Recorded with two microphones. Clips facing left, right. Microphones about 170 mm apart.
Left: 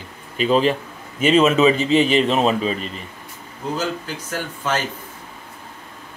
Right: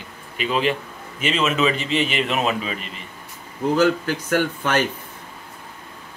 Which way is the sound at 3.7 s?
65° right (ahead or behind).